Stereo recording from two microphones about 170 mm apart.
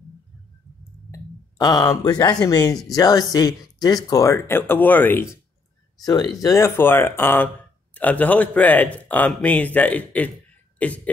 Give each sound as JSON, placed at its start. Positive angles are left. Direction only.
{"t": 1.1, "sound": "speech", "side_deg": 25}